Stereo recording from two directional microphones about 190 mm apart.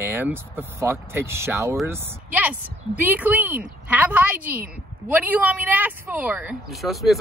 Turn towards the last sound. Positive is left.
turn(degrees=0)  # may be behind; listen again after turning